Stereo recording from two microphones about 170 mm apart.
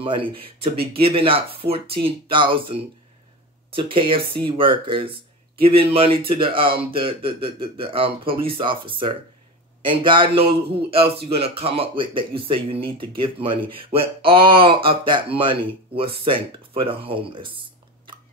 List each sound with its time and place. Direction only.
0.0 s speech: 30° right (ahead or behind)